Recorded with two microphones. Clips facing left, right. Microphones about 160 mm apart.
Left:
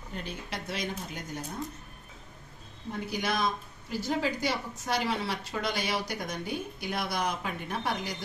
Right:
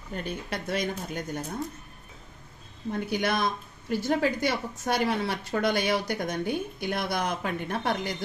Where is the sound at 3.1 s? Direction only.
60° right (ahead or behind).